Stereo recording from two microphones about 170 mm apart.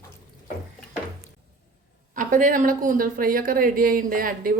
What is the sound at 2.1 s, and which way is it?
A woman's voice, 50° right (ahead or behind).